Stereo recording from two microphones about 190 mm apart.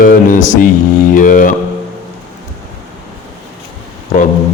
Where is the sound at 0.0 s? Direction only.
45° left (ahead or behind).